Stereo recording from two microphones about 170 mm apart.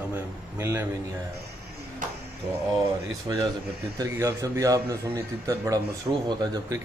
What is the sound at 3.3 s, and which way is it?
A man's voice, 20° right (ahead or behind).